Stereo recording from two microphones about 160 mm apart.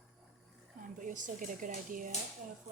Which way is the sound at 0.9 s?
55° right (ahead or behind).